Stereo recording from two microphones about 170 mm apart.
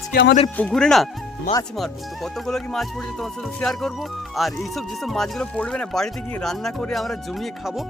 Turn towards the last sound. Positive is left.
turn(degrees=0)  # may be behind; listen again after turning